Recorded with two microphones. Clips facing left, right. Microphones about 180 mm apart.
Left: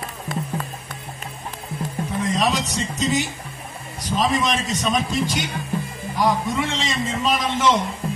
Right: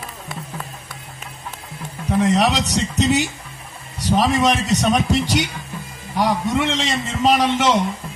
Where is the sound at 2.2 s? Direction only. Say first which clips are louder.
Right 4 dB; 75° right (ahead or behind).